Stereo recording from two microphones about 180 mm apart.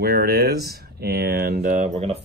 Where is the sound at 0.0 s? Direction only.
60° right (ahead or behind).